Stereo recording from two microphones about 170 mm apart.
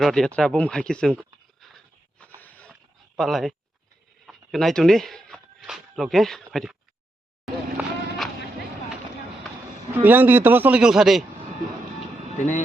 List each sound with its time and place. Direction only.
0.0 s speech: centre (ahead or behind)
0.3 s a sound: 5° left (ahead or behind)
3.2 s speech: centre (ahead or behind)
7.4 s vehicle: centre (ahead or behind)
9.9 s a man's voice: 10° right (ahead or behind)
12.4 s speech: 45° left (ahead or behind)